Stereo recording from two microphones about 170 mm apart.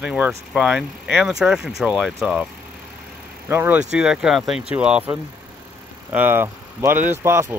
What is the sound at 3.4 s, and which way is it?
Speech, 10° right (ahead or behind).